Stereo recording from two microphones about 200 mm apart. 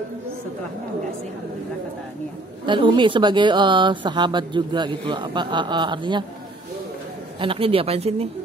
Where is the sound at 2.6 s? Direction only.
25° right (ahead or behind).